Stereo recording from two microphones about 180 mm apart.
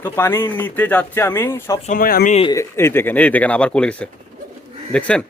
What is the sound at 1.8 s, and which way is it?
Speech, 50° left (ahead or behind).